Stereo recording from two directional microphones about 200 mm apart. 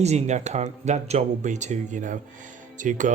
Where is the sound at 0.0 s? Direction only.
35° right (ahead or behind).